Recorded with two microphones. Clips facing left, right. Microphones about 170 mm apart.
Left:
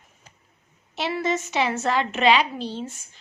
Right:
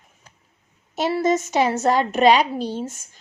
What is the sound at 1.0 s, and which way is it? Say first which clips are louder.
A woman's voice: right 5 dB; 45° right (ahead or behind).